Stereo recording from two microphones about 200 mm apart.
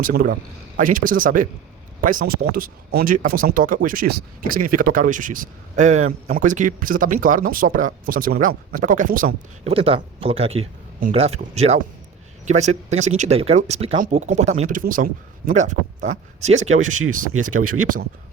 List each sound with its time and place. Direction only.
0.0 s speech: 45° right (ahead or behind)
9.6 s speech: 30° right (ahead or behind)
17.3 s speech: 90° right